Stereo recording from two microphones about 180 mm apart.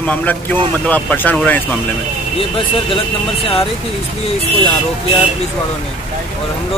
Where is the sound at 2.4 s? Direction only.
30° left (ahead or behind).